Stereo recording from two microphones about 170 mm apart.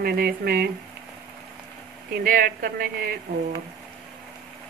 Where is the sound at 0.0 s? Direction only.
60° right (ahead or behind).